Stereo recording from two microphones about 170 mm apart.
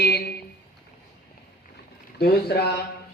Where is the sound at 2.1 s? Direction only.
70° left (ahead or behind).